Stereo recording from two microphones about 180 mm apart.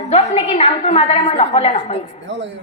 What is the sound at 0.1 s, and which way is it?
A woman's voice, 40° left (ahead or behind).